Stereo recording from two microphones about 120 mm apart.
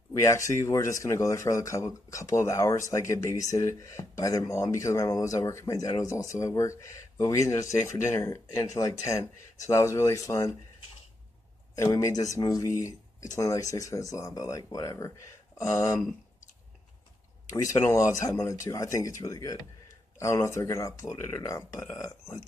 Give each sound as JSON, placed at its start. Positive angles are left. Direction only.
{"t": 0.1, "sound": "speech", "side_deg": 25}
{"t": 9.8, "sound": "speech", "side_deg": 25}
{"t": 11.7, "sound": "speech", "side_deg": 25}
{"t": 17.5, "sound": "speech", "side_deg": 25}